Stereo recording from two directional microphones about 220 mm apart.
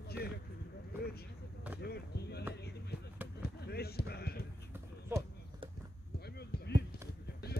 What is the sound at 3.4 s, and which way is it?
Basketball bounce, 45° left (ahead or behind).